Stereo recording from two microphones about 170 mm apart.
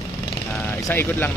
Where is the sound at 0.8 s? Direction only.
10° left (ahead or behind).